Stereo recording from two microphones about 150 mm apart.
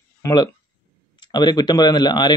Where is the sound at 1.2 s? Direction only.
30° left (ahead or behind).